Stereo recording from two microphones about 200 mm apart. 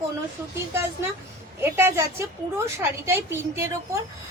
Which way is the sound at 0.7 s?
10° right (ahead or behind).